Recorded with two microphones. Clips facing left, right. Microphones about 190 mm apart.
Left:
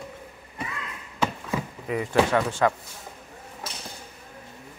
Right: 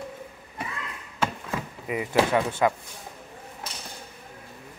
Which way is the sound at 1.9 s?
10° right (ahead or behind).